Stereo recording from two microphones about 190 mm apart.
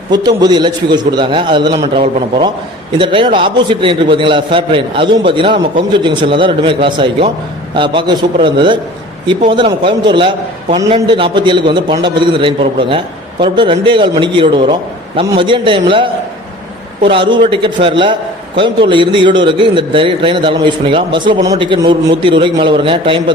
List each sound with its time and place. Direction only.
0.3 s a man's voice: 20° right (ahead or behind)